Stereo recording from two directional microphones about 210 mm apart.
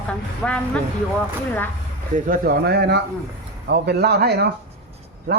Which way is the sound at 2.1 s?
40° right (ahead or behind).